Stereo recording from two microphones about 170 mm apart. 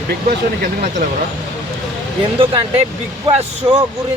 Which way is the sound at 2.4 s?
30° right (ahead or behind).